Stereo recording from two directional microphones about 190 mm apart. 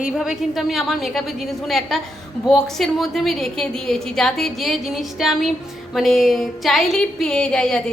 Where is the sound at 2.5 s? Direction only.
Centre (ahead or behind).